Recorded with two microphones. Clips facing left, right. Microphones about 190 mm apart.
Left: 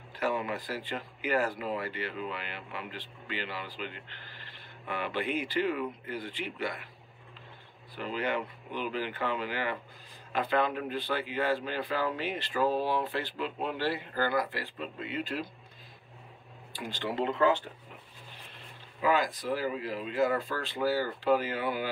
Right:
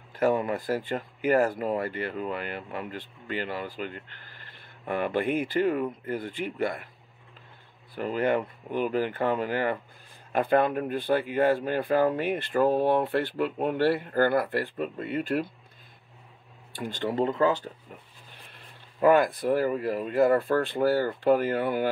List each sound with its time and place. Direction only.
0.1 s speech: 45° right (ahead or behind)
7.9 s speech: 50° right (ahead or behind)
16.7 s speech: 50° right (ahead or behind)
18.9 s speech: 55° right (ahead or behind)